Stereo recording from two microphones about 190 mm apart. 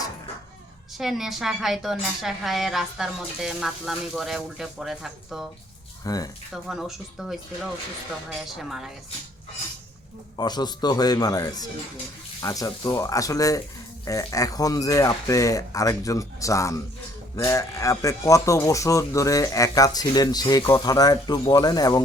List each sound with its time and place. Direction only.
0.9 s a woman's voice: centre (ahead or behind)
6.1 s speech: 20° left (ahead or behind)
6.5 s a woman's voice: centre (ahead or behind)
10.3 s speech: 20° left (ahead or behind)